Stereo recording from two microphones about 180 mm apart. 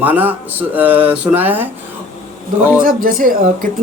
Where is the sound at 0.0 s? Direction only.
10° right (ahead or behind).